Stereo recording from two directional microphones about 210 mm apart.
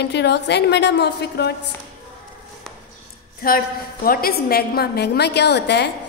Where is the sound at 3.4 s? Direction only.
45° left (ahead or behind).